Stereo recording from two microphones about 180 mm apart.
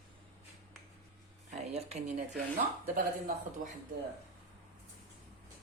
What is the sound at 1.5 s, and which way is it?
Speech, 35° right (ahead or behind).